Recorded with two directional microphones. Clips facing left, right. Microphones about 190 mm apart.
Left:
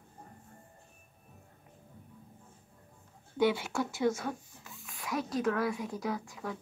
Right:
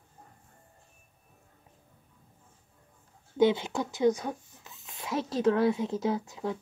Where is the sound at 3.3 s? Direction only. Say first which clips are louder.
Right 4 dB; 20° right (ahead or behind).